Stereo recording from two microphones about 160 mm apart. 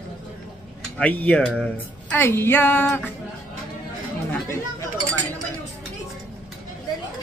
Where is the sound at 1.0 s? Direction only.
10° left (ahead or behind).